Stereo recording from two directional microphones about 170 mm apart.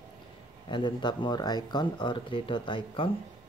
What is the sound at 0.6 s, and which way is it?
Speech, 30° left (ahead or behind).